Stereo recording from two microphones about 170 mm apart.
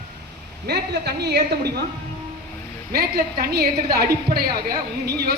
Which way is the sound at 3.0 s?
65° right (ahead or behind).